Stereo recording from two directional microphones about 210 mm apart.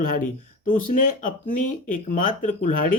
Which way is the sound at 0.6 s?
40° left (ahead or behind).